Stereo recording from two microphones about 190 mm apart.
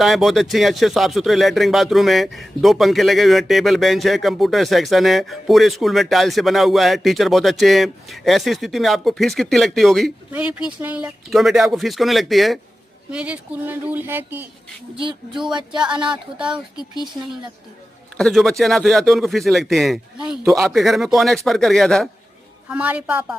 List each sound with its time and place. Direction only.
0.0 s speech: centre (ahead or behind)
14.9 s speech: 25° right (ahead or behind)
16.0 s speech: 5° right (ahead or behind)
18.2 s speech: centre (ahead or behind)